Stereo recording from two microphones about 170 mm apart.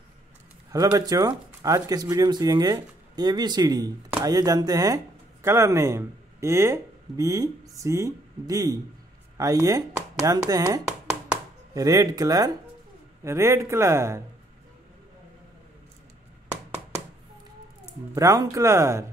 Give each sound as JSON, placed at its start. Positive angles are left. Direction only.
{"t": 0.7, "sound": "a man's voice", "side_deg": -20}
{"t": 18.1, "sound": "a man's voice", "side_deg": -20}